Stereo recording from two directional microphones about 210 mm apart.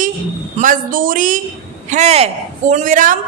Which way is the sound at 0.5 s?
40° right (ahead or behind).